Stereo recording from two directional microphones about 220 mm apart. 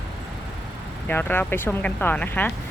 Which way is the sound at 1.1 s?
10° left (ahead or behind).